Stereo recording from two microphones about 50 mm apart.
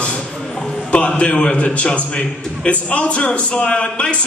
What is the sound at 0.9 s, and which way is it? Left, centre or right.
A man's voice, left.